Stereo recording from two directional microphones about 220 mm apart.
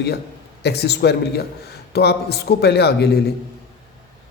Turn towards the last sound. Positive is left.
turn(degrees=50)  # may be behind; listen again after turning